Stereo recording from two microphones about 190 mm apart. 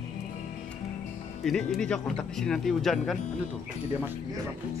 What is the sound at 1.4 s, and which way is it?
Speech, centre (ahead or behind).